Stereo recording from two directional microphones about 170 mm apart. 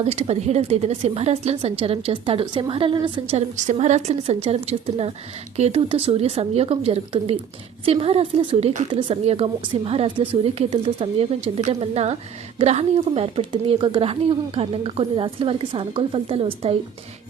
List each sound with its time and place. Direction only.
0.0 s a woman's voice: 40° right (ahead or behind)